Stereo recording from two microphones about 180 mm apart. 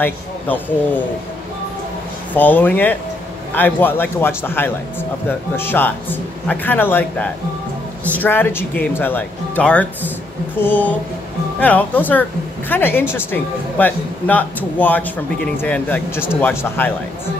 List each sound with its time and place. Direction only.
2.3 s a woman's voice: 10° left (ahead or behind)